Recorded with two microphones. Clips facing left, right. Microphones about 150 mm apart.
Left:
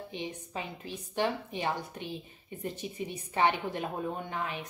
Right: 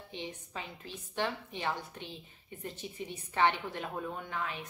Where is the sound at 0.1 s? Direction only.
15° left (ahead or behind).